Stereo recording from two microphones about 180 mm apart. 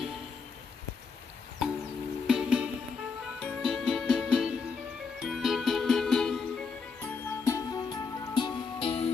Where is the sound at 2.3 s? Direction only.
5° right (ahead or behind).